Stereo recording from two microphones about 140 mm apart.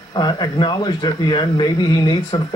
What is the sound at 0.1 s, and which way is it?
Speech, 30° left (ahead or behind).